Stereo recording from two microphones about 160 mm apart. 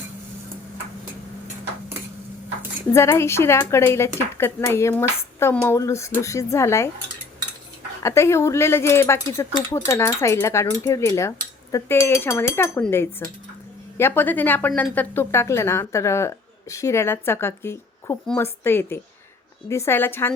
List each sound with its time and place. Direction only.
2.9 s speech: 15° left (ahead or behind)
8.0 s speech: 15° left (ahead or behind)